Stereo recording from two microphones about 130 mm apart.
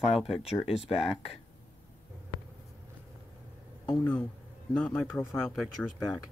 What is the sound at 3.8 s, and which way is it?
A man's voice, 15° left (ahead or behind).